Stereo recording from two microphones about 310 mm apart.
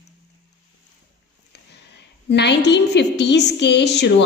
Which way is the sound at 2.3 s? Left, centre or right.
Left.